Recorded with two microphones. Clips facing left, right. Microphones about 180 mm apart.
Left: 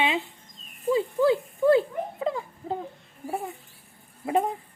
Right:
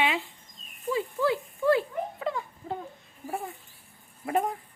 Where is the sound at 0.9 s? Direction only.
25° left (ahead or behind).